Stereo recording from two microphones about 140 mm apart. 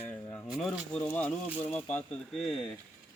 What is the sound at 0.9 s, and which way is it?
Speech, 10° left (ahead or behind).